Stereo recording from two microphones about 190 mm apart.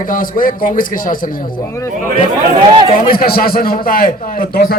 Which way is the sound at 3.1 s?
50° left (ahead or behind).